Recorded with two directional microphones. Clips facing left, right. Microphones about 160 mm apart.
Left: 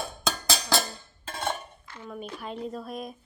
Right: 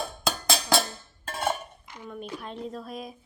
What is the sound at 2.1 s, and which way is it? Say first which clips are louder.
Dishes: left 1 dB; centre (ahead or behind).